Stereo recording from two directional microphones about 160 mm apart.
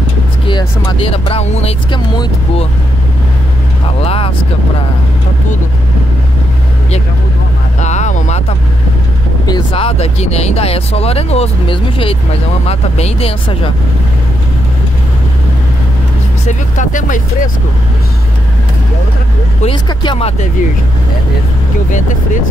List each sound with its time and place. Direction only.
0.5 s speech: 30° left (ahead or behind)
4.0 s speech: 40° left (ahead or behind)
7.8 s vehicle: 45° left (ahead or behind)
9.5 s speech: 35° left (ahead or behind)
16.4 s speech: 50° left (ahead or behind)
19.6 s speech: 30° left (ahead or behind)